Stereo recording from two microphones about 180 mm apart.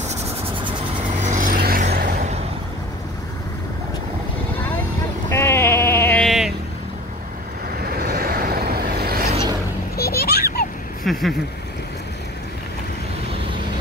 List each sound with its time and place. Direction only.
1.2 s vehicle: 45° right (ahead or behind)
5.3 s sheep: 15° left (ahead or behind)
6.2 s vehicle: centre (ahead or behind)
7.8 s vehicle: 55° right (ahead or behind)
9.9 s children playing: 60° left (ahead or behind)
11.1 s a sound: centre (ahead or behind)